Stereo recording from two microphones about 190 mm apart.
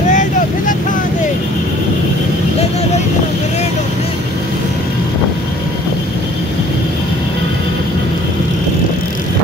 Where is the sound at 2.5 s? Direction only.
35° left (ahead or behind).